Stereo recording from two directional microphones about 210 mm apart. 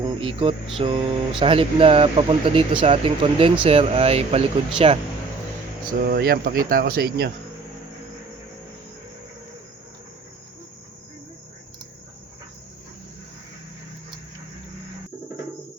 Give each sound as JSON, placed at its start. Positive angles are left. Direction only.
{"t": 0.0, "sound": "speech", "side_deg": -25}
{"t": 6.1, "sound": "speech", "side_deg": -50}